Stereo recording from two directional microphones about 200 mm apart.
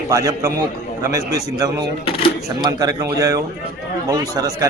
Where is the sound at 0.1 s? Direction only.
15° right (ahead or behind).